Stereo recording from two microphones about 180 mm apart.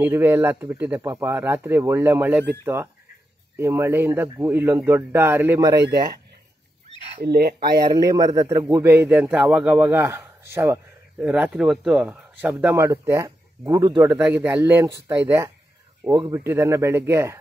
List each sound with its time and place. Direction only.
0.0 s a man's voice: 10° right (ahead or behind)
7.2 s speech: 60° right (ahead or behind)
7.8 s a man's voice: 20° right (ahead or behind)